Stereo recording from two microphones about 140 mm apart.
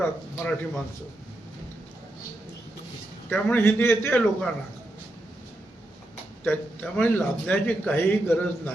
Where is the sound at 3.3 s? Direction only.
15° left (ahead or behind).